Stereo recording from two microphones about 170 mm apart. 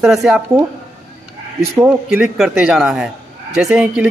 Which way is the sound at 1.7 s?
15° right (ahead or behind).